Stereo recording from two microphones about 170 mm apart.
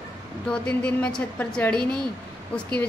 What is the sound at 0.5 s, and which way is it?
A woman's voice, 5° left (ahead or behind).